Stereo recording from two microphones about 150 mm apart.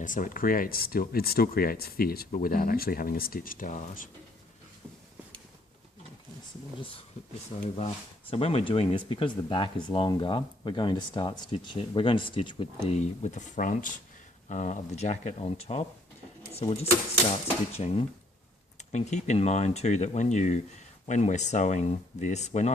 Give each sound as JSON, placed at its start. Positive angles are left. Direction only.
{"t": 0.0, "sound": "speech", "side_deg": 60}
{"t": 2.3, "sound": "speech", "side_deg": 75}
{"t": 7.8, "sound": "speech", "side_deg": 40}
{"t": 12.9, "sound": "speech", "side_deg": 50}